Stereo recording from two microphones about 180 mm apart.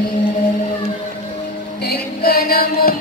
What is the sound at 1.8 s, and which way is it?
Music, 60° left (ahead or behind).